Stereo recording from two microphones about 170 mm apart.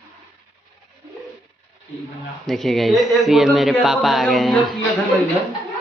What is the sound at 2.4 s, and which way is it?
Speech, centre (ahead or behind).